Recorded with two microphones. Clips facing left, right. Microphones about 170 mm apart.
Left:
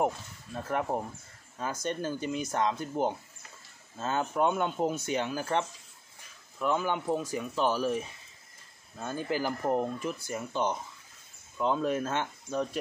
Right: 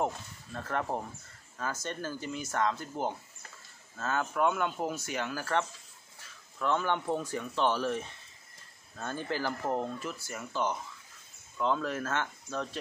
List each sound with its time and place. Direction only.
0.0 s speech: 10° left (ahead or behind)